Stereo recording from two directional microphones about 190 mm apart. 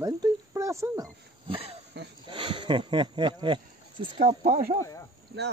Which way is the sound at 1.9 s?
60° right (ahead or behind).